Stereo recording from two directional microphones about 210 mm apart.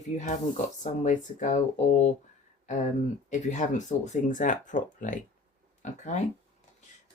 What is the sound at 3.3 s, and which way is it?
Speech, 35° left (ahead or behind).